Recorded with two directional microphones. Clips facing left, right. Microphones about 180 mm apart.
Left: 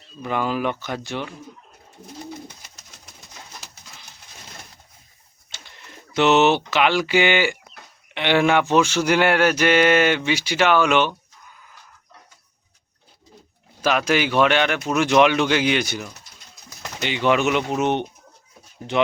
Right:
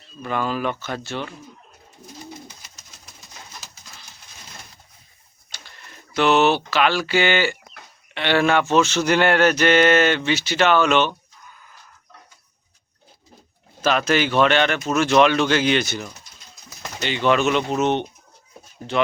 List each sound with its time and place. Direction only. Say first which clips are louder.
0.2 s speech: left 1 dB; 15° left (ahead or behind)
5.5 s pigeon: even; 20° left (ahead or behind)
6.7 s speech: left 1 dB; 20° left (ahead or behind)
13.8 s speech: even; 10° left (ahead or behind)